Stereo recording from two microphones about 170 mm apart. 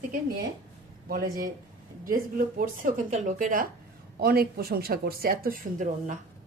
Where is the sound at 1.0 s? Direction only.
60° right (ahead or behind).